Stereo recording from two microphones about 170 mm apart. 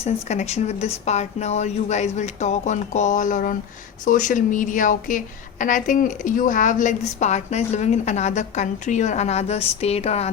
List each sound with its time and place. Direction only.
0.0 s a woman's voice: 40° left (ahead or behind)